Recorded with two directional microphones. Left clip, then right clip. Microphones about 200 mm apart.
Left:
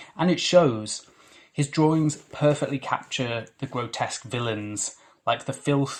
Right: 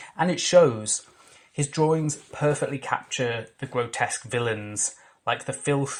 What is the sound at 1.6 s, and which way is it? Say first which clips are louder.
Speech: left 1 dB; 30° right (ahead or behind).